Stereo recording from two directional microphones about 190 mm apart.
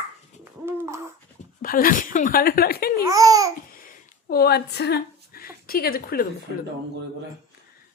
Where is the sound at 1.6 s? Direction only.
50° left (ahead or behind).